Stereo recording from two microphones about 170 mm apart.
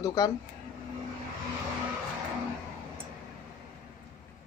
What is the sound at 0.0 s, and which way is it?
Speech, 20° left (ahead or behind).